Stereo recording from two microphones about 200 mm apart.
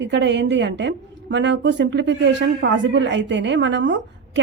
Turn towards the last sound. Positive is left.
turn(degrees=-65)  # may be behind; listen again after turning